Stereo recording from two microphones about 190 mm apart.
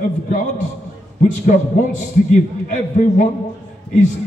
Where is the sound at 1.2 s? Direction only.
40° left (ahead or behind).